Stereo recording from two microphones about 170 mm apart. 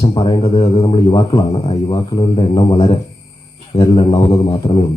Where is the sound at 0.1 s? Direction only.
25° left (ahead or behind).